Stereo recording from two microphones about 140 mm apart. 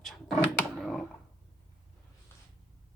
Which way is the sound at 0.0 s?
Centre (ahead or behind).